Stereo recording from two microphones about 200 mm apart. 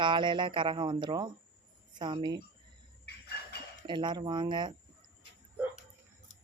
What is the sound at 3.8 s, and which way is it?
Speech, 25° right (ahead or behind).